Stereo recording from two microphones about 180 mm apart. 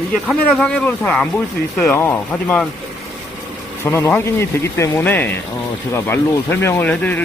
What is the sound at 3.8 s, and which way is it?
Speech, 15° left (ahead or behind).